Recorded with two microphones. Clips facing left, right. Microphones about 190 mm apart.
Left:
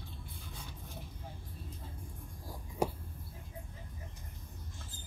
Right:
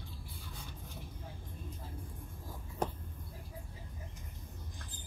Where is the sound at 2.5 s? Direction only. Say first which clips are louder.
Left 3 dB; 10° left (ahead or behind).